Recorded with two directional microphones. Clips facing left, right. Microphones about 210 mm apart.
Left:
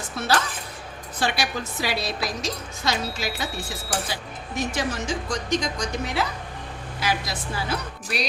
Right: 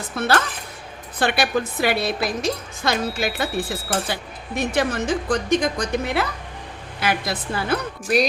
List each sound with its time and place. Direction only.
0.2 s a woman's voice: 55° right (ahead or behind)